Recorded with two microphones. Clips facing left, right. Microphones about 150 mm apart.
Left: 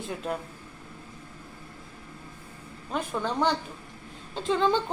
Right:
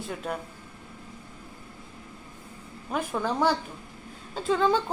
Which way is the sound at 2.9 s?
10° right (ahead or behind).